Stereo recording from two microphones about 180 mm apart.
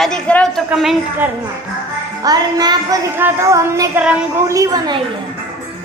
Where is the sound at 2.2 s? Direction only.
20° right (ahead or behind).